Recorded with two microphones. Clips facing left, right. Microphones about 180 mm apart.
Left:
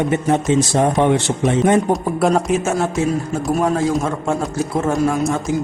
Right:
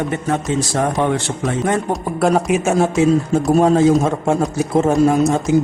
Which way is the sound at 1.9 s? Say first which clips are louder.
Even; centre (ahead or behind).